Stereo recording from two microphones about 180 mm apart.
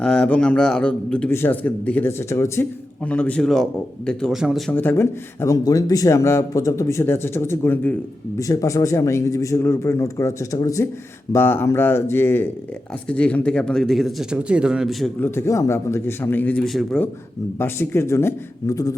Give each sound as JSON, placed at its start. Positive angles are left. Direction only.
{"t": 0.0, "sound": "a man's voice", "side_deg": 5}
{"t": 15.2, "sound": "a man's voice", "side_deg": 15}
{"t": 17.6, "sound": "a man's voice", "side_deg": 15}